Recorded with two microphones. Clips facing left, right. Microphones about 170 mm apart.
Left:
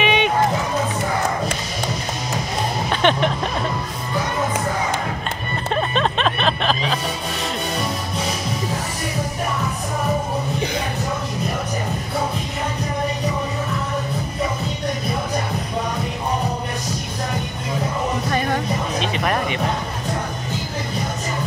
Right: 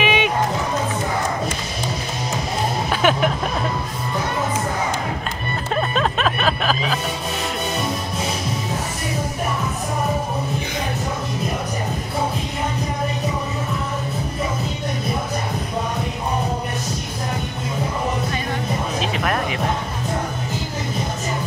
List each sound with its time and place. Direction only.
0.0 s music: 5° right (ahead or behind)
2.9 s music: 5° right (ahead or behind)
5.8 s music: 5° right (ahead or behind)
18.9 s music: centre (ahead or behind)